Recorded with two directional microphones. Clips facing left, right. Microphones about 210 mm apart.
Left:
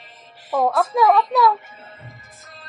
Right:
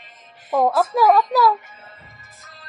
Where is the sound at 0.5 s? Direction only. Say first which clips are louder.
Right 1 dB; centre (ahead or behind).